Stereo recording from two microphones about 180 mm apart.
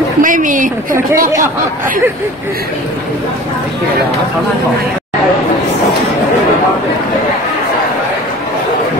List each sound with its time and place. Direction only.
0.2 s a woman's voice: 45° right (ahead or behind)